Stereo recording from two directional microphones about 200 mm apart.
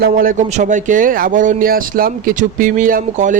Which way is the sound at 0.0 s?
45° right (ahead or behind).